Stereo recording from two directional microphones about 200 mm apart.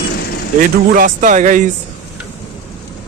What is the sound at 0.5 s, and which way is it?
Speech, 45° right (ahead or behind).